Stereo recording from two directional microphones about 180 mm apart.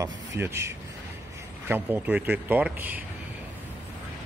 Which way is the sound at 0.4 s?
15° right (ahead or behind).